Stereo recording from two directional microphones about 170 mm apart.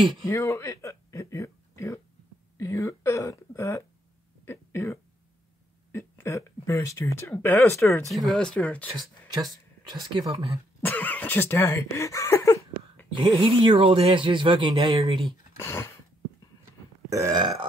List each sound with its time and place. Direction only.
0.3 s a sound: 20° left (ahead or behind)
2.6 s speech: 15° left (ahead or behind)
4.5 s cough: 15° left (ahead or behind)
5.9 s speech: 15° left (ahead or behind)
8.1 s speech: centre (ahead or behind)
9.3 s speech: 25° right (ahead or behind)
10.8 s speech: 10° left (ahead or behind)
13.4 s speech: 30° right (ahead or behind)
15.5 s a sound: 15° left (ahead or behind)
17.1 s burping: 15° right (ahead or behind)